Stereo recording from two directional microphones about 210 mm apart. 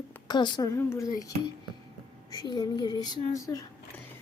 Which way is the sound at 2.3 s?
20° left (ahead or behind).